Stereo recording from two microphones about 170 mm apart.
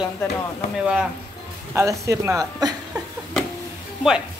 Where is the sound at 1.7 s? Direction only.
20° right (ahead or behind).